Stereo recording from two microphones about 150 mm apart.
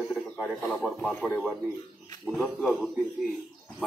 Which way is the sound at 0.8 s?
5° left (ahead or behind).